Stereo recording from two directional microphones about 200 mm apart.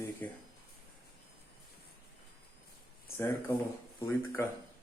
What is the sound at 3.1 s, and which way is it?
Speech, 10° left (ahead or behind).